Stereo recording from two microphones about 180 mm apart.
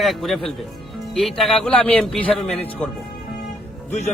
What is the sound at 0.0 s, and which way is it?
A man's voice, centre (ahead or behind).